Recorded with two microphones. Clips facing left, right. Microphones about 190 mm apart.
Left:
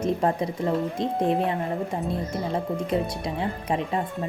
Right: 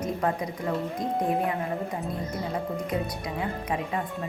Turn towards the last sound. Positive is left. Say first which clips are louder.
# left 3 dB
turn(degrees=30)  # may be behind; listen again after turning